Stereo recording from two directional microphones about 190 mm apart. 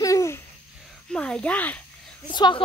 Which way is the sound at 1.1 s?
5° left (ahead or behind).